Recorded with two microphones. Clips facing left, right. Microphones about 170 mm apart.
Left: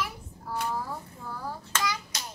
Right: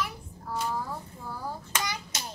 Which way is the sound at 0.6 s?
Centre (ahead or behind).